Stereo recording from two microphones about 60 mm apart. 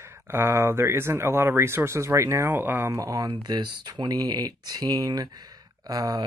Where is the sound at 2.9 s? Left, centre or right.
Right.